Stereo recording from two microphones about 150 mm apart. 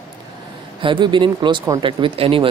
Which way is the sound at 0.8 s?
30° right (ahead or behind).